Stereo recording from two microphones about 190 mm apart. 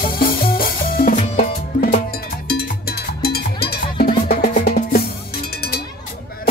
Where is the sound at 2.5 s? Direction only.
55° left (ahead or behind).